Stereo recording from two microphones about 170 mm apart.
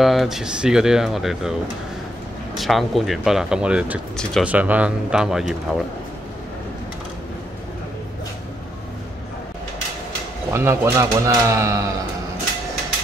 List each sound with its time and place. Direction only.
0.0 s speech: centre (ahead or behind)
2.5 s speech: centre (ahead or behind)
4.2 s speech: 5° left (ahead or behind)
4.5 s speech: 10° right (ahead or behind)
10.5 s speech: 15° right (ahead or behind)